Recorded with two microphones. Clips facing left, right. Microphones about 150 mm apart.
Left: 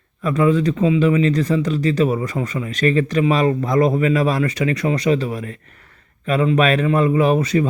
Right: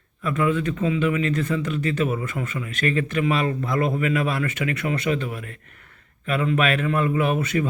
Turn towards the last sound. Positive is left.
turn(degrees=35)  # may be behind; listen again after turning